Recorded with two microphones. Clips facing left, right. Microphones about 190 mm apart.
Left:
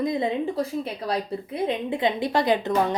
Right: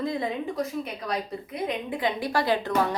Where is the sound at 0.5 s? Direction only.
30° left (ahead or behind).